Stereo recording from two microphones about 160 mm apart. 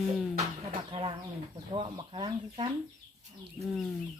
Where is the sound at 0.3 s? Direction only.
35° right (ahead or behind).